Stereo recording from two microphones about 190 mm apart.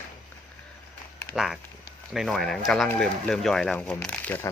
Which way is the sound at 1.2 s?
Centre (ahead or behind).